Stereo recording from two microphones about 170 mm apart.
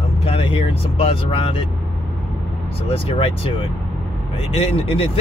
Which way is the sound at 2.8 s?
35° left (ahead or behind).